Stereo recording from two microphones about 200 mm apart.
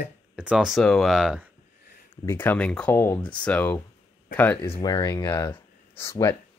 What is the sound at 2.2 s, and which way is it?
Speech, 10° left (ahead or behind).